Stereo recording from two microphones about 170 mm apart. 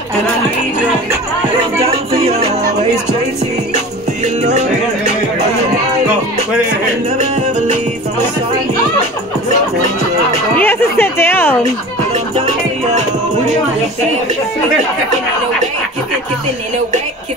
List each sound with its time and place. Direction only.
1.9 s music: 35° right (ahead or behind)
3.7 s music: 45° right (ahead or behind)
10.6 s a sound: 15° left (ahead or behind)
12.4 s music: 35° right (ahead or behind)